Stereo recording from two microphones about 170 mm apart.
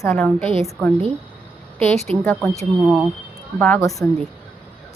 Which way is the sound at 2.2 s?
5° left (ahead or behind).